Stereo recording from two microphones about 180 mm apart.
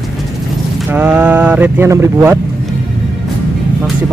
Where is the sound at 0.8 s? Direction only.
10° right (ahead or behind).